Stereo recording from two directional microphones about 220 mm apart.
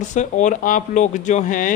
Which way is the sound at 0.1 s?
35° left (ahead or behind).